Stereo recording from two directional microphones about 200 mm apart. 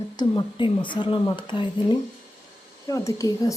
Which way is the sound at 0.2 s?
25° left (ahead or behind).